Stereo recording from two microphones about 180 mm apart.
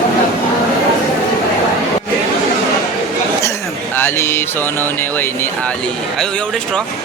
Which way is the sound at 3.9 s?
15° left (ahead or behind).